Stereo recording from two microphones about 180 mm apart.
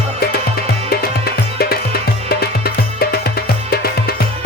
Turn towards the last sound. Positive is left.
turn(degrees=60)  # may be behind; listen again after turning